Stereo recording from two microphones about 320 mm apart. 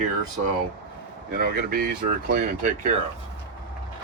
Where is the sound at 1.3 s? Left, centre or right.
Right.